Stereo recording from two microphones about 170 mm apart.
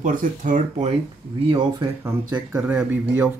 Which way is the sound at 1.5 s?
25° right (ahead or behind).